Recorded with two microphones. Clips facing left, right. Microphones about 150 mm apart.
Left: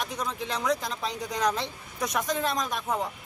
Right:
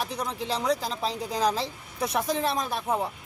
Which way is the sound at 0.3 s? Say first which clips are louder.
Right 1 dB; 30° right (ahead or behind).